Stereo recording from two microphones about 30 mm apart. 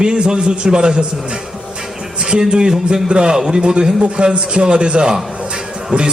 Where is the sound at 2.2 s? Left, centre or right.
Right.